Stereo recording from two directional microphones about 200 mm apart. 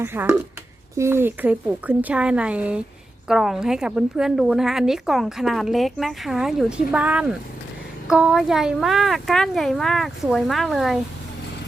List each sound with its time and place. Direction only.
0.0 s a woman's voice: 10° right (ahead or behind)